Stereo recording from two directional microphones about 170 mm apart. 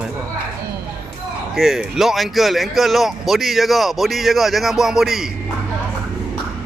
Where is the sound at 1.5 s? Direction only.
Centre (ahead or behind).